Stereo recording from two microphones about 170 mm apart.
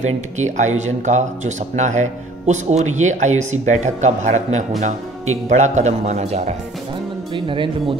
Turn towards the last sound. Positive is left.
turn(degrees=-30)  # may be behind; listen again after turning